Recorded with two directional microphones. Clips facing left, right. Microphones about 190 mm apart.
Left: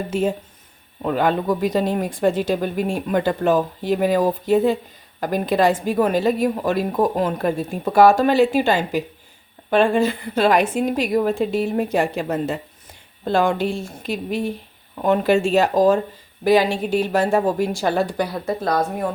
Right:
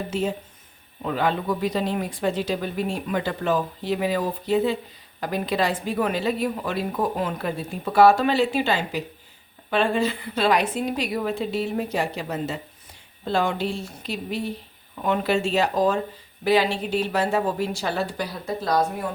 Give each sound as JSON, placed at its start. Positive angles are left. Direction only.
{"t": 0.1, "sound": "a woman's voice", "side_deg": 50}